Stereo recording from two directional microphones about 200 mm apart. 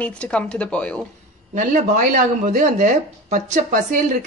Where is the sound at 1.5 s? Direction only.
40° right (ahead or behind).